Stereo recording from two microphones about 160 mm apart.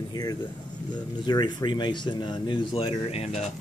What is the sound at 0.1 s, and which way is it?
Speech, 25° left (ahead or behind).